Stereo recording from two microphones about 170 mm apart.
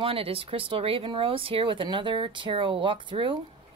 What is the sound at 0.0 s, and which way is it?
A woman's voice, 35° right (ahead or behind).